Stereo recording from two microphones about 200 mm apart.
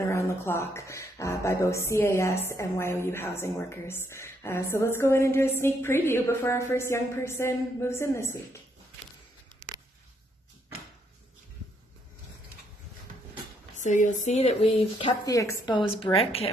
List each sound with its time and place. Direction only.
0.0 s speech: 15° left (ahead or behind)
13.7 s a woman's voice: 40° left (ahead or behind)